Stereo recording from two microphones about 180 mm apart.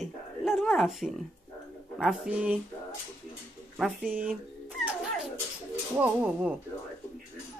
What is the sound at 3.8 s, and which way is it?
Speech, 5° right (ahead or behind).